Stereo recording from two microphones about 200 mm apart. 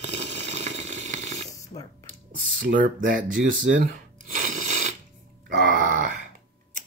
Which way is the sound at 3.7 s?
40° right (ahead or behind).